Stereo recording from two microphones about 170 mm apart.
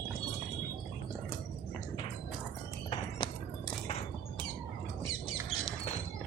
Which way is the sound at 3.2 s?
30° left (ahead or behind).